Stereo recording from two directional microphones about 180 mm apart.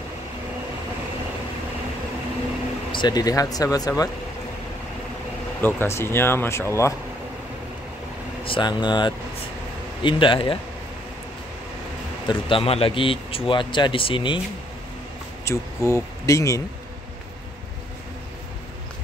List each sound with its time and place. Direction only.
2.9 s a man's voice: 25° left (ahead or behind)
5.6 s speech: 10° left (ahead or behind)
8.5 s a man's voice: 25° left (ahead or behind)
12.3 s a man's voice: 30° left (ahead or behind)
15.4 s speech: 15° left (ahead or behind)